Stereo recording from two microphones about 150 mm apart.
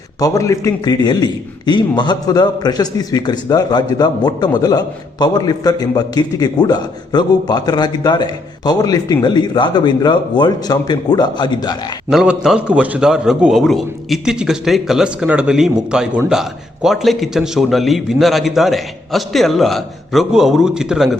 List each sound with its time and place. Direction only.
0.2 s a man's voice: 20° left (ahead or behind)
12.1 s a man's voice: 5° right (ahead or behind)